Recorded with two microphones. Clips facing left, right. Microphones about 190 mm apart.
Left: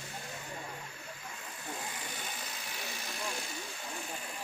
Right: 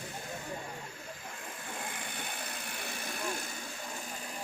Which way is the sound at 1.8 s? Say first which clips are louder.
Right 1 dB; 55° right (ahead or behind).